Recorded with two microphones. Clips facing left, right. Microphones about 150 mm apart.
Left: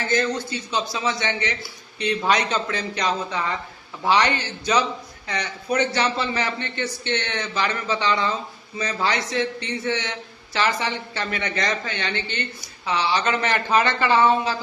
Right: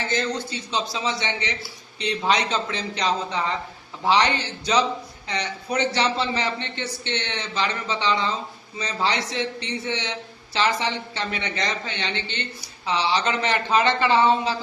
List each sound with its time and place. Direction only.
0.0 s speech: 30° right (ahead or behind)